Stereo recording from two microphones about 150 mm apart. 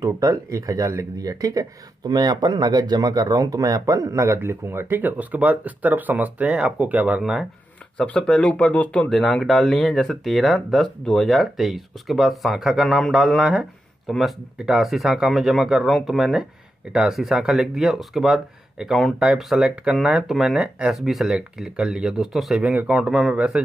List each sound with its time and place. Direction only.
0.0 s speech: 20° right (ahead or behind)